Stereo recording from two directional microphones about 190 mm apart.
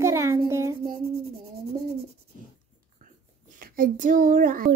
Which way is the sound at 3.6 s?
45° right (ahead or behind).